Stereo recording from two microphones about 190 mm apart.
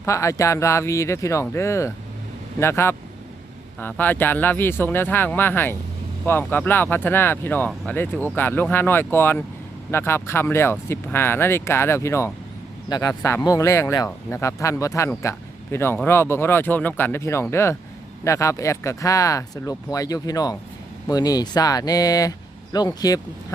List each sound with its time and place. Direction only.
0.0 s speech: 15° left (ahead or behind)